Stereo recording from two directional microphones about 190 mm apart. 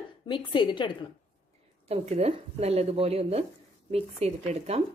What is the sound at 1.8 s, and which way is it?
Speech, 35° right (ahead or behind).